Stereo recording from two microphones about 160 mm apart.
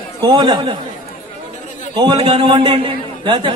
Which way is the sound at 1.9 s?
30° right (ahead or behind).